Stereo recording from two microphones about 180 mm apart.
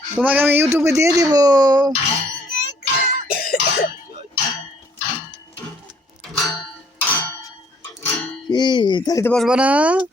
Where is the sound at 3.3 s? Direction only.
55° left (ahead or behind).